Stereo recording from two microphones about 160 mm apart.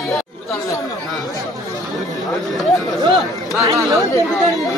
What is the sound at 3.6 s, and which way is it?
Speech, 20° right (ahead or behind).